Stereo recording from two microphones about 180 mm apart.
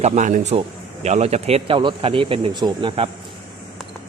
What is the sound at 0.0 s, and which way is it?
A man's voice, 40° right (ahead or behind).